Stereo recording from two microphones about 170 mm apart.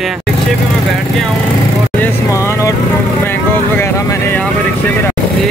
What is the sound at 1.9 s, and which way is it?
Speech, 15° left (ahead or behind).